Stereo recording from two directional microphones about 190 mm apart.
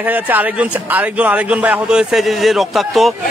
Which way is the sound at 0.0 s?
10° right (ahead or behind).